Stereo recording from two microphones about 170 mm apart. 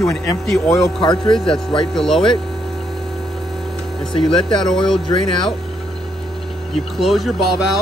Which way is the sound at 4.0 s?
5° left (ahead or behind).